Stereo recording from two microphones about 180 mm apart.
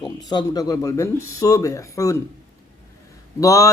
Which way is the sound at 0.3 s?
20° left (ahead or behind).